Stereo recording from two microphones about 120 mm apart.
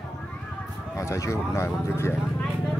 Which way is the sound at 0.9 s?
25° left (ahead or behind).